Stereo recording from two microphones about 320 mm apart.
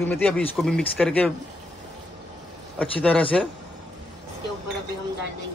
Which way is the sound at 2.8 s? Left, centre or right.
Centre.